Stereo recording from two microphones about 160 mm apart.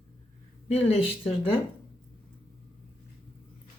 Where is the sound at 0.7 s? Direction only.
40° left (ahead or behind).